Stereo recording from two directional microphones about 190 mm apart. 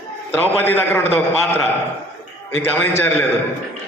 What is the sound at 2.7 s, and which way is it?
Speech, 10° left (ahead or behind).